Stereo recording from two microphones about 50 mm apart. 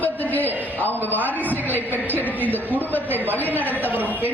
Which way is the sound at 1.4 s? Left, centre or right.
Right.